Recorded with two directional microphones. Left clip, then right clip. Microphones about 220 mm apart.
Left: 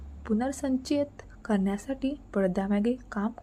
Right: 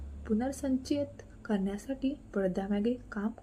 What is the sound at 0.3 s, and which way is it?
A woman's voice, 20° left (ahead or behind).